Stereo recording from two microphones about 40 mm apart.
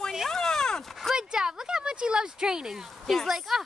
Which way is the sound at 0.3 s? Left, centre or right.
Centre.